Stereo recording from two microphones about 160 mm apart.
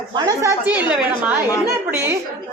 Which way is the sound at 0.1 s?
25° right (ahead or behind).